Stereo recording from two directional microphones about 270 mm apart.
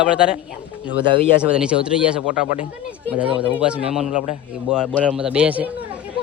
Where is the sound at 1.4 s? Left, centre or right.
Centre.